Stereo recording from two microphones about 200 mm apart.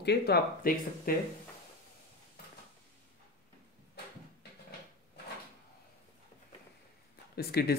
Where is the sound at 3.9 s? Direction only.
55° left (ahead or behind).